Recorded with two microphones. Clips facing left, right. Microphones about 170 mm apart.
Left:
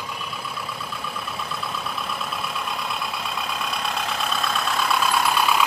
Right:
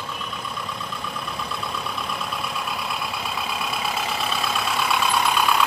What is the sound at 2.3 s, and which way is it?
Vehicle, centre (ahead or behind).